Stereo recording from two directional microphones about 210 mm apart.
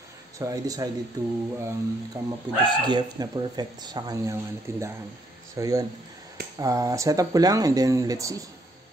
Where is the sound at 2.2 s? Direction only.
10° right (ahead or behind).